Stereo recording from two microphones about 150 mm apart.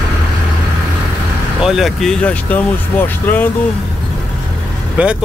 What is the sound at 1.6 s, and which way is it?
Speech, centre (ahead or behind).